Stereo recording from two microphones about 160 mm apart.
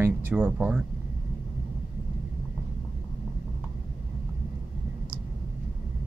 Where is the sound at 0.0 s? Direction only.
10° right (ahead or behind).